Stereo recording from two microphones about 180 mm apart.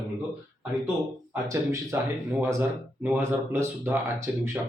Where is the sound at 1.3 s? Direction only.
15° right (ahead or behind).